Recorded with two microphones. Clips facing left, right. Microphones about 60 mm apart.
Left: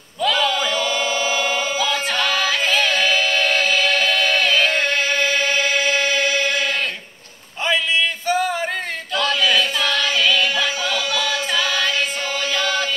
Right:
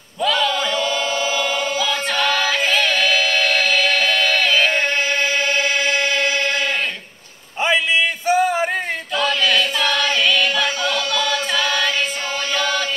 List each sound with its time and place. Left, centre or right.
0.2 s chant: centre
8.3 s a sound: right
9.1 s chant: centre